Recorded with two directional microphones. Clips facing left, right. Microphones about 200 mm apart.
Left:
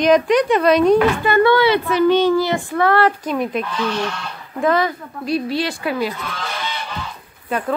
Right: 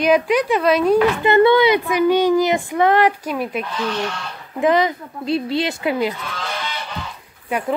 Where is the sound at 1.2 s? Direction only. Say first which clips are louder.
Right 1 dB; 20° right (ahead or behind); by 3.6 s 5° right (ahead or behind).